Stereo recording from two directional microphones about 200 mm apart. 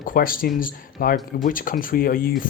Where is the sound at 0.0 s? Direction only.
45° left (ahead or behind).